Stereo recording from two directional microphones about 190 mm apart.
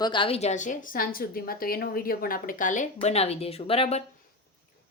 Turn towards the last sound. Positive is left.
turn(degrees=30)  # may be behind; listen again after turning